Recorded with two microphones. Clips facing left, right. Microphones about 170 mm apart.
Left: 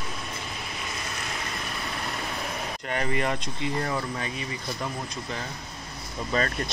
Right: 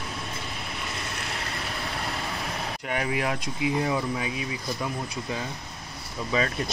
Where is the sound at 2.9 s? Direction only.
5° right (ahead or behind).